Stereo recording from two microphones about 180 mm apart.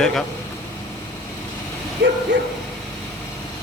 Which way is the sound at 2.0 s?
70° right (ahead or behind).